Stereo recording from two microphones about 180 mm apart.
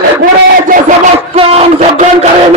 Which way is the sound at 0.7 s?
45° right (ahead or behind).